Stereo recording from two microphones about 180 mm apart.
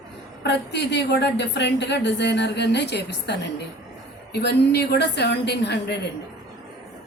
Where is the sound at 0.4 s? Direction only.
70° left (ahead or behind).